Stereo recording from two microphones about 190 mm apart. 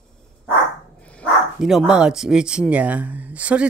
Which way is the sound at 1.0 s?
5° left (ahead or behind).